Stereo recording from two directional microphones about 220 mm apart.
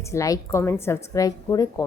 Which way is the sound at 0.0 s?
15° left (ahead or behind).